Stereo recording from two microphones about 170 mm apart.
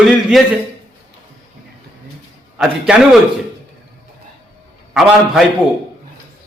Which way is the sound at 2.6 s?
5° right (ahead or behind).